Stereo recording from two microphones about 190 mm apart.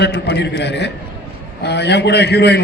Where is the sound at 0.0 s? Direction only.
60° left (ahead or behind).